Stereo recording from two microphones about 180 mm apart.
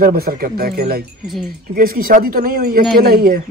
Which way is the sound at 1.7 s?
55° right (ahead or behind).